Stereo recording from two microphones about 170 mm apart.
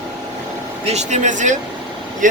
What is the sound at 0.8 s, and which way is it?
Speech, 45° right (ahead or behind).